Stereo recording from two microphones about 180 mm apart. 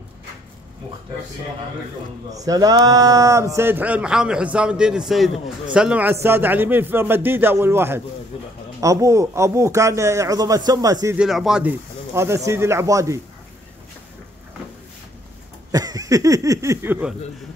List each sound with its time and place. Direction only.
2.3 s a man's voice: 20° right (ahead or behind)
11.1 s speech: centre (ahead or behind)
12.1 s a man's voice: 15° right (ahead or behind)
15.7 s a sound: 20° right (ahead or behind)